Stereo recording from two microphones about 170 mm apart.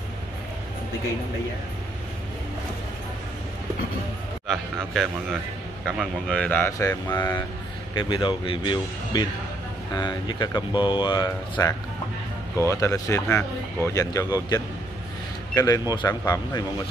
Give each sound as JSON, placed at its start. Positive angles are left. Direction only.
{"t": 4.5, "sound": "a man's voice", "side_deg": 0}
{"t": 7.1, "sound": "speech", "side_deg": 25}